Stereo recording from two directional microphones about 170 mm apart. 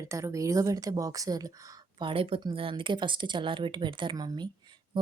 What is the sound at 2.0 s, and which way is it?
A woman's voice, 30° right (ahead or behind).